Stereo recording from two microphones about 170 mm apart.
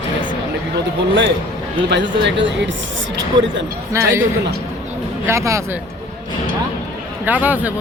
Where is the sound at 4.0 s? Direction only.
15° right (ahead or behind).